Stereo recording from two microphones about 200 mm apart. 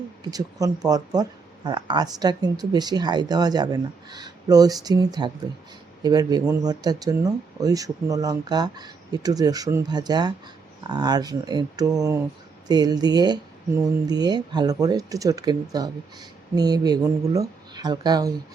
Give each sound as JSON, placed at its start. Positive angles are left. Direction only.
{"t": 0.3, "sound": "speech", "side_deg": -20}